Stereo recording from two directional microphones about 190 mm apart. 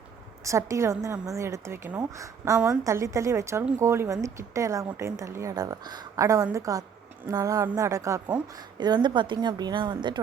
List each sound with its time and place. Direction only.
0.4 s a woman's voice: 15° right (ahead or behind)